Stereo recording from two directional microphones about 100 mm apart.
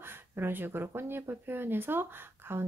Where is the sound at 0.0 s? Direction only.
20° right (ahead or behind).